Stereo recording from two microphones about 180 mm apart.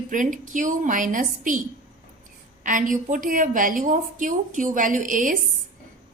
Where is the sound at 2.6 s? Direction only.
45° right (ahead or behind).